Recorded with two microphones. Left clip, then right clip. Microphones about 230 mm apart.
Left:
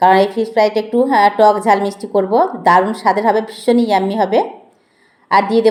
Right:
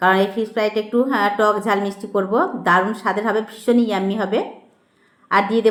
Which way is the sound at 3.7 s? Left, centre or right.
Centre.